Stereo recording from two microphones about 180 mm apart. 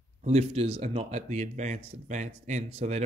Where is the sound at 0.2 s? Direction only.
40° right (ahead or behind).